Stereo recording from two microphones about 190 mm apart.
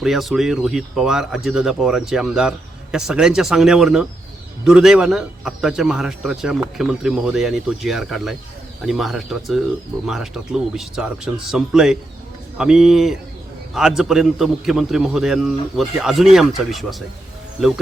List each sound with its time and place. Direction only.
0.0 s speech: centre (ahead or behind)